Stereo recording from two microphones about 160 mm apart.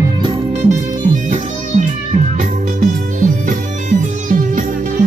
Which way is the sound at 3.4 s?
55° right (ahead or behind).